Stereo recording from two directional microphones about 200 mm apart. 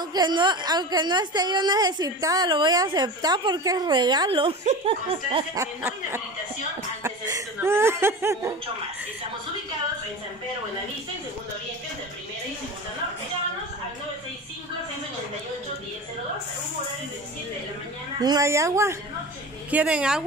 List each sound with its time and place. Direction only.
0.1 s a woman's voice: 20° right (ahead or behind)
5.6 s speech: 10° right (ahead or behind)
18.2 s speech: 15° right (ahead or behind)